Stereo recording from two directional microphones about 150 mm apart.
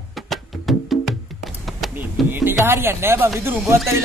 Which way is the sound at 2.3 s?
15° right (ahead or behind).